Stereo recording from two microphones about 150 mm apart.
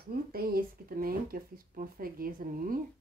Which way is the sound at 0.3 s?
80° right.